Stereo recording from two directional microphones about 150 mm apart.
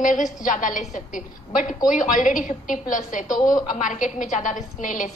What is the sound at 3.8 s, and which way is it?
A woman's voice, 60° left (ahead or behind).